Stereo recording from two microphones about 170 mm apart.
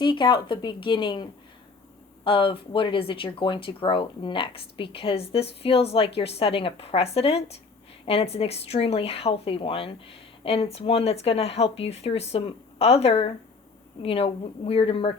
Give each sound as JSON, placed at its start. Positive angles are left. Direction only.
{"t": 0.0, "sound": "a woman's voice", "side_deg": 25}